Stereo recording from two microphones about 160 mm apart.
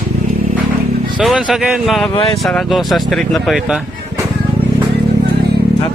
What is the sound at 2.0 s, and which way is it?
Speech, 30° left (ahead or behind).